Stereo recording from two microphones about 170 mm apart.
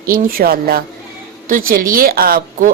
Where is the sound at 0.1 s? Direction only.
60° right (ahead or behind).